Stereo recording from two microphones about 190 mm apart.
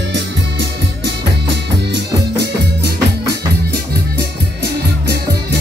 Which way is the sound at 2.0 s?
60° right (ahead or behind).